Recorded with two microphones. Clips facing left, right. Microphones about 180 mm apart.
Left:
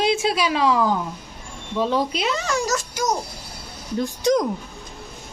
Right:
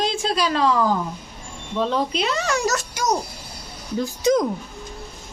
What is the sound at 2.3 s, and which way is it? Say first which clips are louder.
Speech: right 1 dB; 65° right (ahead or behind).